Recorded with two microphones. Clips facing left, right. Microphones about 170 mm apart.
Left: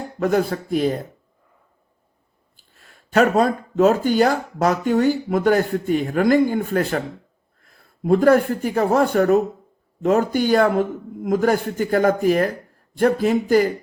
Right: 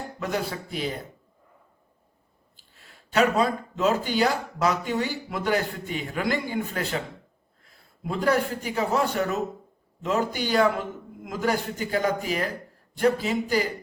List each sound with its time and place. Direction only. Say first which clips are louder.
0.2 s speech: left 10 dB; 50° left (ahead or behind)
3.1 s speech: left 5 dB; 50° left (ahead or behind)
8.0 s speech: left 9 dB; 50° left (ahead or behind)